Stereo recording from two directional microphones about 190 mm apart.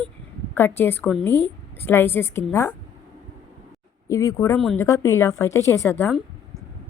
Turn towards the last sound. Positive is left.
turn(degrees=15)  # may be behind; listen again after turning